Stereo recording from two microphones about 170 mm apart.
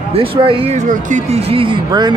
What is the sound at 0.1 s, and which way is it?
Speech, 30° right (ahead or behind).